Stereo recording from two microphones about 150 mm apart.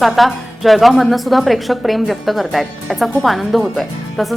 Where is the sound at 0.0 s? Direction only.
Centre (ahead or behind).